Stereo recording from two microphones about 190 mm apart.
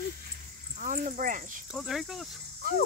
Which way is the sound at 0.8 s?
45° right (ahead or behind).